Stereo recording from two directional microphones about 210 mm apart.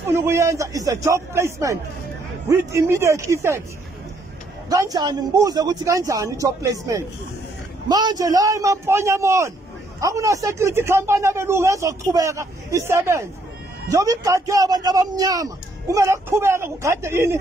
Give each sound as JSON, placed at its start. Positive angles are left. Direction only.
{"t": 0.0, "sound": "a man's voice", "side_deg": -10}
{"t": 4.6, "sound": "a man's voice", "side_deg": -15}